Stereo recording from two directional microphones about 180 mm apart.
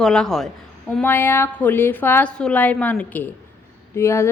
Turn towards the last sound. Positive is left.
turn(degrees=15)  # may be behind; listen again after turning